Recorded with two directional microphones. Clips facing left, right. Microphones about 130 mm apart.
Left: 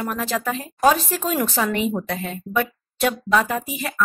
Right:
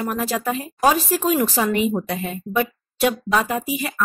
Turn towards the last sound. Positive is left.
turn(degrees=-5)  # may be behind; listen again after turning